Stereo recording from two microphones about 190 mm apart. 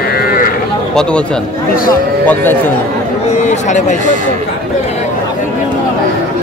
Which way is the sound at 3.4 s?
40° left (ahead or behind).